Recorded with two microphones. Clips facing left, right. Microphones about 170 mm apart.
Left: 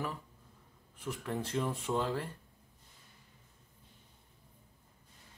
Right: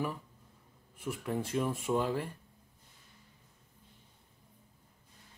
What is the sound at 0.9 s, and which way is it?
Speech, 10° right (ahead or behind).